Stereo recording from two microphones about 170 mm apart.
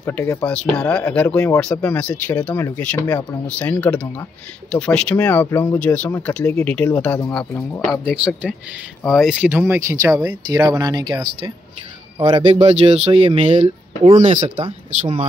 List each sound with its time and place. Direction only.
0.0 s speech: 15° left (ahead or behind)
8.0 s speech: 5° right (ahead or behind); by 11.1 s 25° right (ahead or behind)
12.2 s speech: 25° right (ahead or behind)